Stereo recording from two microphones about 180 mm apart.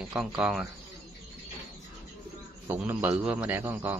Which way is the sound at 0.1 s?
5° right (ahead or behind).